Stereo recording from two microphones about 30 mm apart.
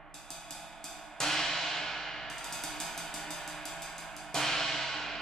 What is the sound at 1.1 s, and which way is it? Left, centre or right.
Music, centre.